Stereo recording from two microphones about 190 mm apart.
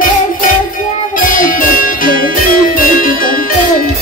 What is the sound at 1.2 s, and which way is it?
Music, 45° left (ahead or behind).